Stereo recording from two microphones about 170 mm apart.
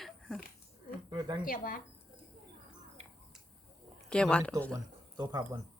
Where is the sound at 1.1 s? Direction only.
25° right (ahead or behind).